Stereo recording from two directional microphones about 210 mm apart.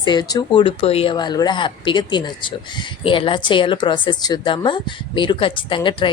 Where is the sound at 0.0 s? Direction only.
20° left (ahead or behind).